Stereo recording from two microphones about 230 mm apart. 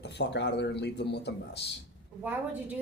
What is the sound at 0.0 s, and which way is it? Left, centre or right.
A man's voice, left.